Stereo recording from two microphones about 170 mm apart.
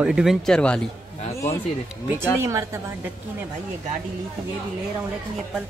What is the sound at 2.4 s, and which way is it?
Speech, 15° right (ahead or behind).